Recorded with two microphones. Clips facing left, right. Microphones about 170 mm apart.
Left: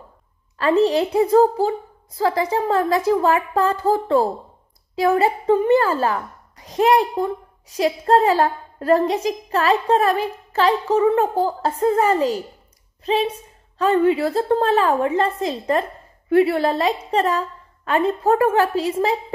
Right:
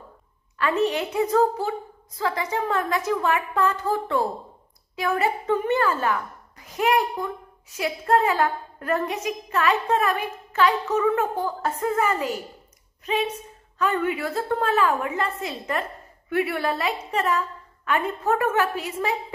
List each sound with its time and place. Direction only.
0.6 s a woman's voice: 35° left (ahead or behind)